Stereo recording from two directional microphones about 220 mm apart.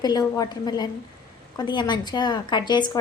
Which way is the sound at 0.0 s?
15° left (ahead or behind).